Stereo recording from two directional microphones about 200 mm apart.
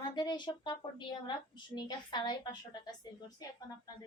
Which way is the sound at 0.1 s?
20° left (ahead or behind).